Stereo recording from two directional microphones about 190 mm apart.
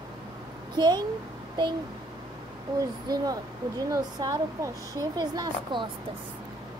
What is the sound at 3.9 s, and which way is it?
Speech, 20° right (ahead or behind).